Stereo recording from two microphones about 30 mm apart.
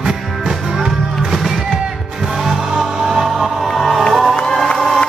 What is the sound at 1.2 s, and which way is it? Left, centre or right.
Music, centre.